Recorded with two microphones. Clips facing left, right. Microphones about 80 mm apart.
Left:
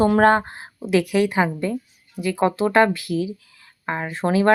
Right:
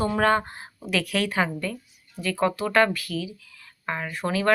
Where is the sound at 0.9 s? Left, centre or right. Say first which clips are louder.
Left 7 dB; centre.